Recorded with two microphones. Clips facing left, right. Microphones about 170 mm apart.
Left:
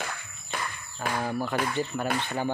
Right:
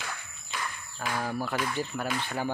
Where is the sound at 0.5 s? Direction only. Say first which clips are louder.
Left 2 dB; 55° left (ahead or behind).